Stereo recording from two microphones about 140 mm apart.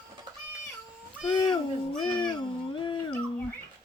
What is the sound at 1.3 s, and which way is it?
Speech, 30° left (ahead or behind).